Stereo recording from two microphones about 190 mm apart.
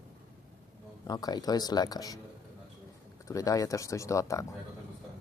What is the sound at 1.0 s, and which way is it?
Speech, 20° left (ahead or behind).